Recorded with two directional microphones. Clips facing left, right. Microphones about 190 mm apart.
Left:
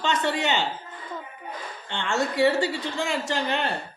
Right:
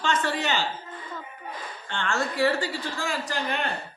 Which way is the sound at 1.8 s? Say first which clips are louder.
Left 2 dB; 20° left (ahead or behind).